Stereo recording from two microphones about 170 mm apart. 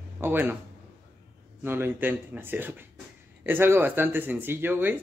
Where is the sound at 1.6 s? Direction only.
15° right (ahead or behind).